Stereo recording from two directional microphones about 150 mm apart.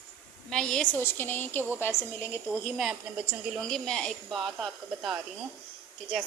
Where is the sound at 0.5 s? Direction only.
5° left (ahead or behind).